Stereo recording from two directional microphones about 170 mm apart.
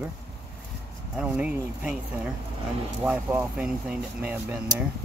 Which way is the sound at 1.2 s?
5° right (ahead or behind).